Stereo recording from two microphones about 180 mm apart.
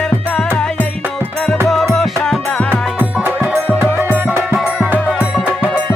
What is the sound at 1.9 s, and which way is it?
Music, centre (ahead or behind).